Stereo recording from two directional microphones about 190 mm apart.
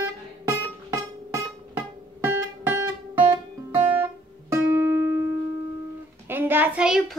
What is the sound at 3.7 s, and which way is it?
Guitar, 15° right (ahead or behind).